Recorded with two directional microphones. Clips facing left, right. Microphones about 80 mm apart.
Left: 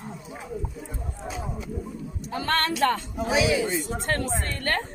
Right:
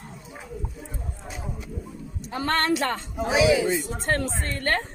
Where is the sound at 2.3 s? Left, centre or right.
Right.